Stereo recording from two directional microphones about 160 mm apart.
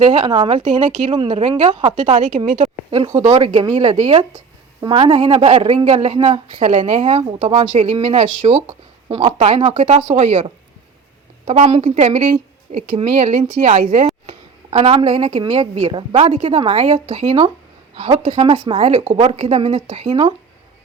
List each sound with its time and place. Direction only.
0.0 s speech: 30° right (ahead or behind)
0.9 s speech: 50° right (ahead or behind)
1.1 s speech: 35° right (ahead or behind)
2.0 s speech: 50° right (ahead or behind); by 3.9 s 30° right (ahead or behind)
3.9 s speech: 45° right (ahead or behind)
4.8 s speech: 35° right (ahead or behind)
11.4 s speech: 45° right (ahead or behind)